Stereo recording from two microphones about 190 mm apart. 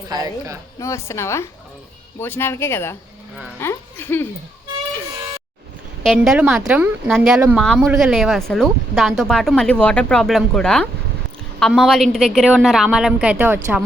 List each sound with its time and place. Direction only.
0.1 s a woman's voice: 20° right (ahead or behind)
0.8 s speech: 15° left (ahead or behind)
6.0 s speech: centre (ahead or behind)